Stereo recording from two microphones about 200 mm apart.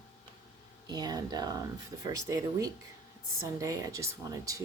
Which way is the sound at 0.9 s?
20° right (ahead or behind).